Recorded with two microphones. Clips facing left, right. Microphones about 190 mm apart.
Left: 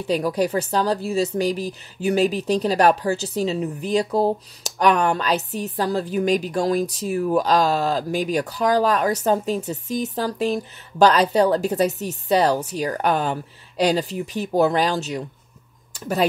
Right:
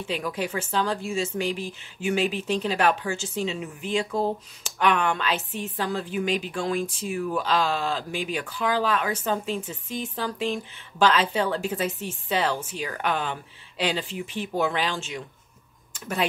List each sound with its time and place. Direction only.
0.0 s speech: 40° left (ahead or behind)